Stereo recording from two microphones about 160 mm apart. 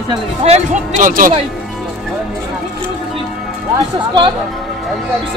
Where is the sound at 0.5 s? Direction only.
55° right (ahead or behind).